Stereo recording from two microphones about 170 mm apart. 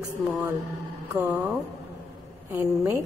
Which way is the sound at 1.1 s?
10° right (ahead or behind).